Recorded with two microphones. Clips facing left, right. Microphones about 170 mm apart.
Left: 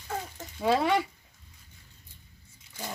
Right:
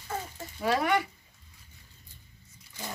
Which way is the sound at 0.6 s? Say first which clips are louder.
Left 2 dB; 20° left (ahead or behind).